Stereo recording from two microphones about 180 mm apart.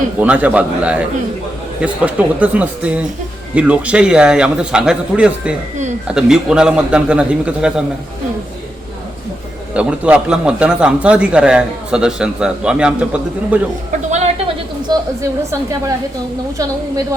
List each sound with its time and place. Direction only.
0.2 s a man's voice: 10° right (ahead or behind)
9.7 s a man's voice: 5° right (ahead or behind)
14.9 s a sound: 25° right (ahead or behind)